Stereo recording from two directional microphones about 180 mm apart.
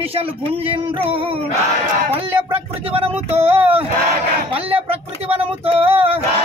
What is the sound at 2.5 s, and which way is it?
Speech, 35° right (ahead or behind).